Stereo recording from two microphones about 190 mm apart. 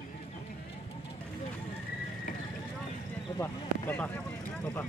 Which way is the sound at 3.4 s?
10° left (ahead or behind).